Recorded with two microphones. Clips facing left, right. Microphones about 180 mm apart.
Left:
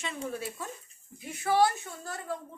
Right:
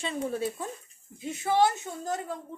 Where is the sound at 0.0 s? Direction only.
30° right (ahead or behind).